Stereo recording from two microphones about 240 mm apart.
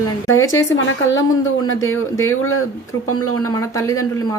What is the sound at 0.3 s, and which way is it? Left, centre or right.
Speech, left.